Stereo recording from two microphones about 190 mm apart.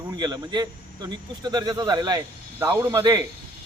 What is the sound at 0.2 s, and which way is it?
A man's voice, 20° right (ahead or behind).